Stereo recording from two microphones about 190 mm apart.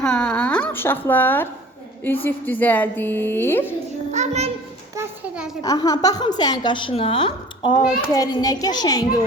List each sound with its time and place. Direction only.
0.0 s a woman's voice: 5° left (ahead or behind)
4.1 s child singing: 35° right (ahead or behind)
4.9 s a sound: 5° right (ahead or behind)
5.6 s a woman's voice: 20° left (ahead or behind)